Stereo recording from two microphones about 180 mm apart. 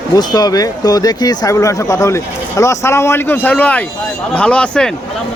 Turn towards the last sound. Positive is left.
turn(degrees=5)  # may be behind; listen again after turning